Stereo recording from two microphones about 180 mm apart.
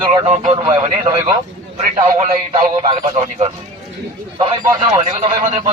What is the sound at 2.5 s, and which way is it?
Speech, 25° right (ahead or behind).